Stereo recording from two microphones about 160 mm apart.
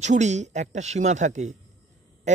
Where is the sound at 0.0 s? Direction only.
45° right (ahead or behind).